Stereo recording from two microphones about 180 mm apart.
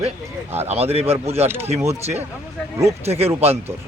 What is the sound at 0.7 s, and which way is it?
Speech, 35° right (ahead or behind).